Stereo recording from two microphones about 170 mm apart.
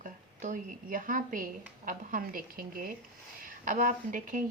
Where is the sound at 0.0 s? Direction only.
50° right (ahead or behind).